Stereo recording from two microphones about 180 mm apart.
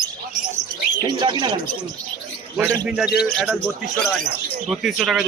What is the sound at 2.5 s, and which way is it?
Speech, 10° right (ahead or behind).